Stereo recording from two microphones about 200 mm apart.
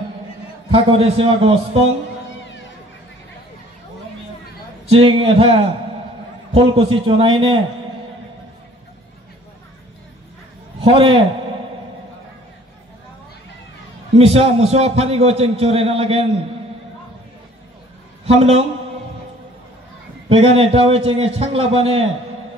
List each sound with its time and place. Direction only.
0.7 s a man's voice: 30° right (ahead or behind)
4.9 s a man's voice: 30° right (ahead or behind)
10.8 s a man's voice: 25° right (ahead or behind)
14.1 s a man's voice: 30° right (ahead or behind)
18.2 s a man's voice: 30° right (ahead or behind)
20.2 s a man's voice: 30° right (ahead or behind)